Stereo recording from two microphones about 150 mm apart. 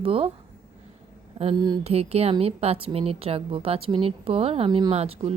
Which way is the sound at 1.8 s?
45° right (ahead or behind).